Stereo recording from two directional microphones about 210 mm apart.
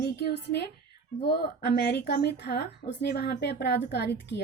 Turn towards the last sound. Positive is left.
turn(degrees=55)  # may be behind; listen again after turning